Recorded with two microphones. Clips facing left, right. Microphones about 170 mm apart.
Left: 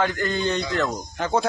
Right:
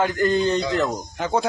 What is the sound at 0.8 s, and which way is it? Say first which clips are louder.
Speech: right 1 dB; 15° right (ahead or behind).